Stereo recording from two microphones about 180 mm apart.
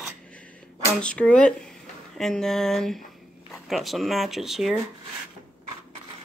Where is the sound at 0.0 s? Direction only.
5° left (ahead or behind).